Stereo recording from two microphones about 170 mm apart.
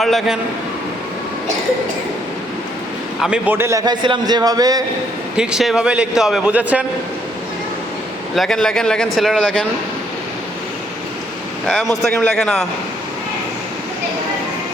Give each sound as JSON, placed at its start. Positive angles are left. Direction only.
{"t": 0.0, "sound": "a man's voice", "side_deg": 0}
{"t": 3.2, "sound": "a man's voice", "side_deg": -5}
{"t": 5.4, "sound": "a man's voice", "side_deg": -5}
{"t": 8.4, "sound": "a man's voice", "side_deg": 5}
{"t": 11.7, "sound": "a man's voice", "side_deg": 0}